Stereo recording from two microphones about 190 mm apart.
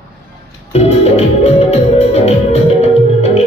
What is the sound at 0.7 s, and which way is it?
Music, 35° left (ahead or behind).